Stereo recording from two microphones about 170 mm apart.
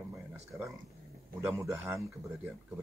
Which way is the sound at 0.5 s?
15° right (ahead or behind).